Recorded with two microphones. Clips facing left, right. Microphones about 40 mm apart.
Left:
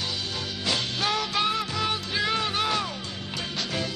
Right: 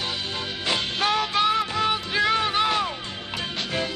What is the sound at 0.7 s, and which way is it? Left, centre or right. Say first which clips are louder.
Music: right 3 dB; right.